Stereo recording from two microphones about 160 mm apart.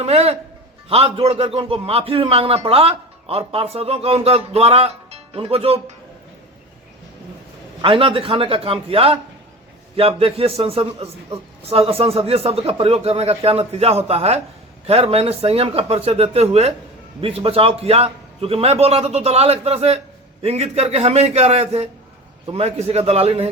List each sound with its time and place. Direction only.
0.0 s a man's voice: 40° right (ahead or behind)
7.8 s a man's voice: 35° right (ahead or behind)